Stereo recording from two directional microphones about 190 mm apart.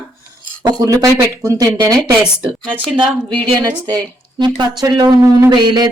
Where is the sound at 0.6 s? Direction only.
20° right (ahead or behind).